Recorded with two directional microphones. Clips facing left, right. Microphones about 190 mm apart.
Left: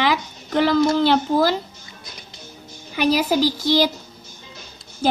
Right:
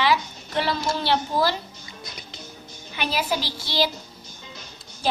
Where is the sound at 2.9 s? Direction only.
40° left (ahead or behind).